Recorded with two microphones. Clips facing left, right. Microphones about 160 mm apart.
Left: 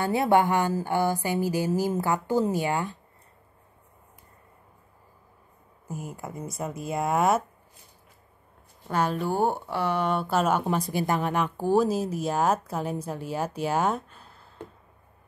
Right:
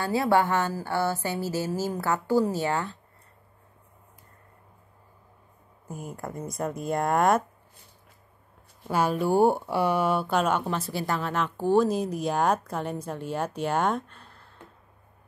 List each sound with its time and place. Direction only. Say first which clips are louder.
0.0 s speech: left 1 dB; 20° left (ahead or behind)
5.9 s speech: even; 5° left (ahead or behind)
8.8 s speech: right 2 dB; 10° right (ahead or behind)
10.2 s speech: left 1 dB; 5° left (ahead or behind)